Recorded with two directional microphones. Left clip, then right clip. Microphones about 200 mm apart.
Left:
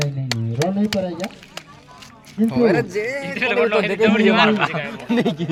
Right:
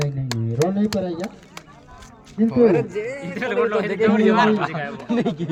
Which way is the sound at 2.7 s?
40° left (ahead or behind).